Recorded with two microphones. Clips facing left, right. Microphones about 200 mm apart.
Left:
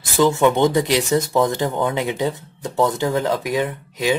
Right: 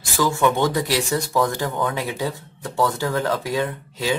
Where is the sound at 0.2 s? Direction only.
20° left (ahead or behind).